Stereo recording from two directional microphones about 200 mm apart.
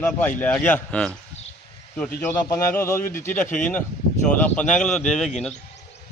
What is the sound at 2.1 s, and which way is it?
A man's voice, 15° left (ahead or behind).